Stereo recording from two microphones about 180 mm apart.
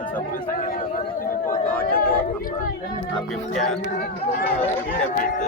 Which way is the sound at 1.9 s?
55° left (ahead or behind).